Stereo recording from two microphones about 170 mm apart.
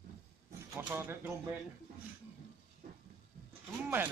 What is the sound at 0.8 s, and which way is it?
Speech, 15° right (ahead or behind).